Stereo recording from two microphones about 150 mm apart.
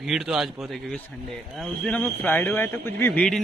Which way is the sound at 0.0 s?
Centre (ahead or behind).